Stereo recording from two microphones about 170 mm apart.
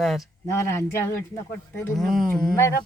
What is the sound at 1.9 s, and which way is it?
Speech, centre (ahead or behind).